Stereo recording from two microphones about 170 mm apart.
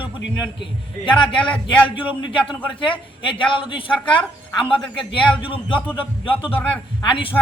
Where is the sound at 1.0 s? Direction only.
30° left (ahead or behind).